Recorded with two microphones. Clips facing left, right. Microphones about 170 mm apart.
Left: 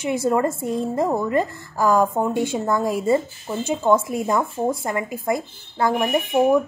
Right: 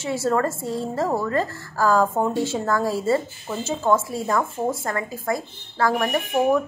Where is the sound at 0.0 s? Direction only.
15° left (ahead or behind).